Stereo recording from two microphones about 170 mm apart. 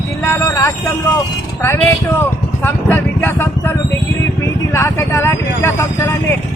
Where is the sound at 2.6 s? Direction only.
10° left (ahead or behind).